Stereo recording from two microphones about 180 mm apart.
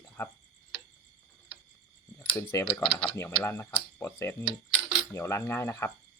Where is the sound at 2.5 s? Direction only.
15° left (ahead or behind).